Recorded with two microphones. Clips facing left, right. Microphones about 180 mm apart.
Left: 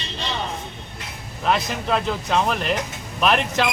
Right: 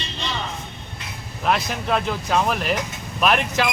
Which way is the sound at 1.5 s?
Centre (ahead or behind).